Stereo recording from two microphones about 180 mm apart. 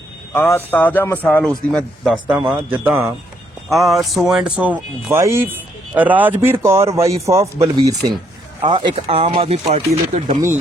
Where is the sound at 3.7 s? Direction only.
Centre (ahead or behind); by 10.4 s 40° right (ahead or behind).